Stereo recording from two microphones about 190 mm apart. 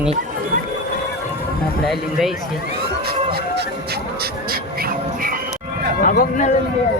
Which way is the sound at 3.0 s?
55° right (ahead or behind).